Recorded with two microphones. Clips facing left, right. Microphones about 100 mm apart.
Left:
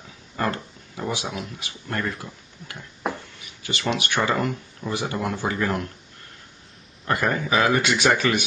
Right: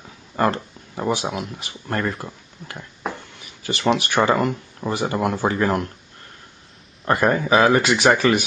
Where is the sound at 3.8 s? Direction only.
45° right (ahead or behind).